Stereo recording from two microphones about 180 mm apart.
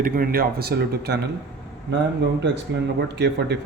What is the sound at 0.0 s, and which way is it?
Speech, 55° right (ahead or behind).